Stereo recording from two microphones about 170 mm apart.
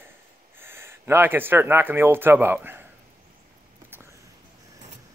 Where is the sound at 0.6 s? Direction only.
15° right (ahead or behind).